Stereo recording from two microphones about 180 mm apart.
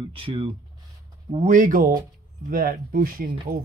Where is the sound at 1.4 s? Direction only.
45° right (ahead or behind).